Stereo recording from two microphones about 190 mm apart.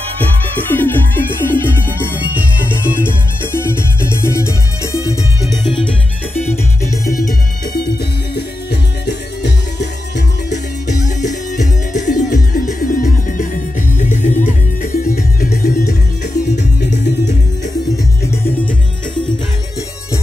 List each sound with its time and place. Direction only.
0.2 s music: 10° left (ahead or behind)
1.9 s music: 10° right (ahead or behind)
3.5 s music: 10° left (ahead or behind)
6.5 s music: 15° left (ahead or behind)
7.7 s music: 55° left (ahead or behind)
10.5 s music: 40° left (ahead or behind)
16.5 s music: 65° left (ahead or behind)